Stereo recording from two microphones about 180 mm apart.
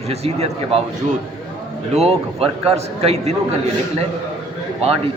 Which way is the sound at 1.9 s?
35° right (ahead or behind).